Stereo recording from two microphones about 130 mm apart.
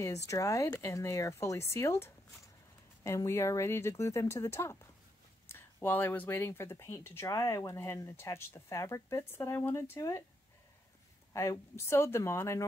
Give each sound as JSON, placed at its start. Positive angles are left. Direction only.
{"t": 0.0, "sound": "speech", "side_deg": 25}
{"t": 11.3, "sound": "speech", "side_deg": 25}